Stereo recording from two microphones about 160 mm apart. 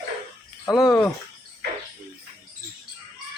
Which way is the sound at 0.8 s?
Centre (ahead or behind).